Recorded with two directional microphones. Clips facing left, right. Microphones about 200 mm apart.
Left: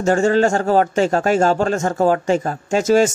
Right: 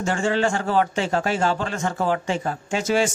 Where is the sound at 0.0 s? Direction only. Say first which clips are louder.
Left 7 dB; 40° left (ahead or behind).